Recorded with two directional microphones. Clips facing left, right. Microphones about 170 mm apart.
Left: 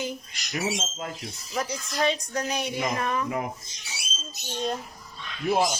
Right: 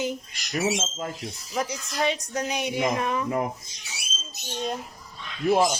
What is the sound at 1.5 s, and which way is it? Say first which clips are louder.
A woman's voice: even; 15° right (ahead or behind).